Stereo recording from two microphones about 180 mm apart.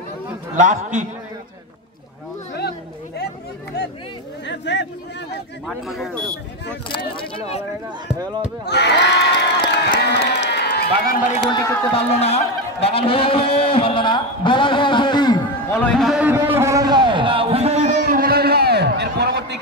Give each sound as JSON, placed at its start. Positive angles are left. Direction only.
{"t": 0.6, "sound": "a man's voice", "side_deg": -45}
{"t": 4.5, "sound": "speech", "side_deg": 75}
{"t": 5.7, "sound": "speech", "side_deg": 0}
{"t": 7.2, "sound": "speech", "side_deg": 30}
{"t": 8.6, "sound": "crowd", "side_deg": 70}
{"t": 9.9, "sound": "run", "side_deg": 75}
{"t": 11.5, "sound": "a man's voice", "side_deg": 30}
{"t": 15.7, "sound": "speech", "side_deg": 5}
{"t": 16.3, "sound": "a sound", "side_deg": -10}
{"t": 18.0, "sound": "a sound", "side_deg": -50}